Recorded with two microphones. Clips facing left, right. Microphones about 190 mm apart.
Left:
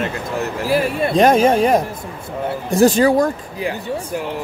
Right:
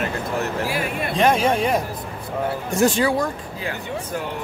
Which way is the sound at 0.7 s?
40° left (ahead or behind).